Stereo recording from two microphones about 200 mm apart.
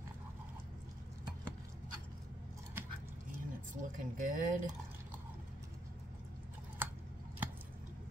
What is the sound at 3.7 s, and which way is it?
Speech, 40° right (ahead or behind).